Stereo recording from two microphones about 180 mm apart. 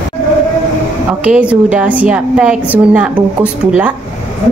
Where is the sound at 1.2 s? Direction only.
5° right (ahead or behind).